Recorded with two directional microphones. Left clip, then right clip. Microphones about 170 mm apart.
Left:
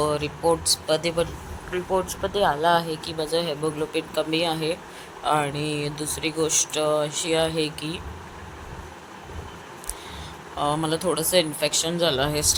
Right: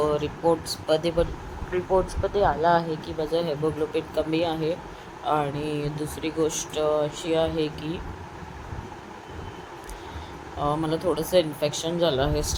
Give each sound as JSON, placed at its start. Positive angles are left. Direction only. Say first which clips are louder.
{"t": 0.0, "sound": "speech", "louder": "even", "side_deg": -20}
{"t": 10.6, "sound": "speech", "louder": "left 1 dB", "side_deg": -10}